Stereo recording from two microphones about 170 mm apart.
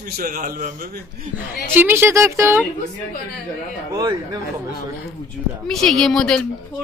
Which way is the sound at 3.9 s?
25° right (ahead or behind).